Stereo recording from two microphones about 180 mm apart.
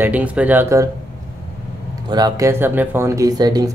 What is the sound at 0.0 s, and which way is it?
Speech, 10° right (ahead or behind).